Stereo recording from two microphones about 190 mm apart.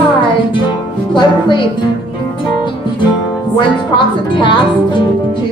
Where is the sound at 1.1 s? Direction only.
25° left (ahead or behind).